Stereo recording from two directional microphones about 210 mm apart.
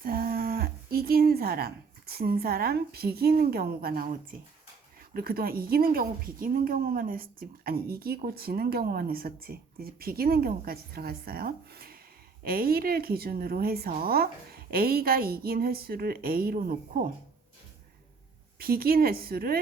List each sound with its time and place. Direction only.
0.0 s a woman's voice: 45° right (ahead or behind)
18.6 s a woman's voice: 45° right (ahead or behind)